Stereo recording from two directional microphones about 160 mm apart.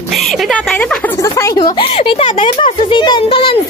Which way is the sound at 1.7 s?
35° left (ahead or behind).